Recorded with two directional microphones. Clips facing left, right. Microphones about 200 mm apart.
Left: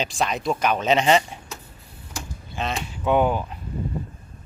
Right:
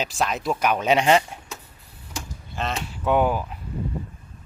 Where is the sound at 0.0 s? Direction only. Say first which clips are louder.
Left 1 dB; 5° right (ahead or behind).